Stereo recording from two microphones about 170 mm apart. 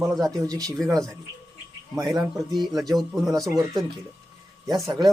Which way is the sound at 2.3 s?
Centre (ahead or behind).